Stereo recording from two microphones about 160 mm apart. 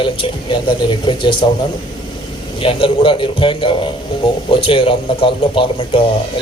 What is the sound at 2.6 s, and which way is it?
Speech, 35° left (ahead or behind).